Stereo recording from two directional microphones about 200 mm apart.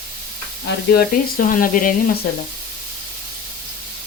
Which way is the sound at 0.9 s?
45° left (ahead or behind).